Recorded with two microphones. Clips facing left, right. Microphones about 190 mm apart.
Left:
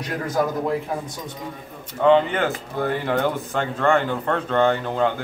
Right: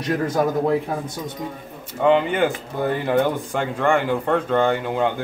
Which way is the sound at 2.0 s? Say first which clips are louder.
Even; 10° right (ahead or behind).